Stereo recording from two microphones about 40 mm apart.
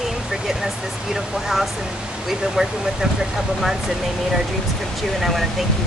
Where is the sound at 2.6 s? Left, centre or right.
Right.